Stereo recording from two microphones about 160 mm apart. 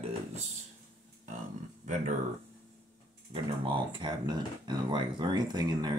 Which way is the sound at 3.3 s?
30° right (ahead or behind).